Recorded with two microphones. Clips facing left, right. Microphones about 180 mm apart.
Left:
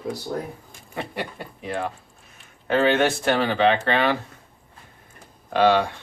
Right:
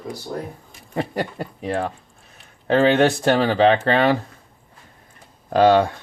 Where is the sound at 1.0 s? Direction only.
40° right (ahead or behind).